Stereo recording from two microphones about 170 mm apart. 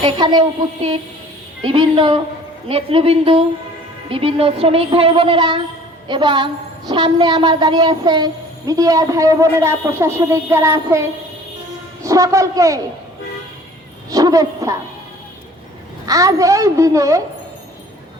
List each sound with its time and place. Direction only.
0.0 s a woman's voice: 25° right (ahead or behind)
1.6 s a woman's voice: 30° right (ahead or behind)
12.0 s a woman's voice: 20° right (ahead or behind)
14.1 s a woman's voice: 20° right (ahead or behind)
16.0 s a woman's voice: 20° right (ahead or behind)